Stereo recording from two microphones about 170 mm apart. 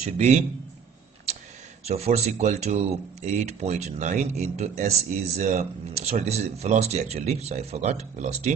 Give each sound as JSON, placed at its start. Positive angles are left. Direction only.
{"t": 0.2, "sound": "speech", "side_deg": -40}
{"t": 1.9, "sound": "speech", "side_deg": -40}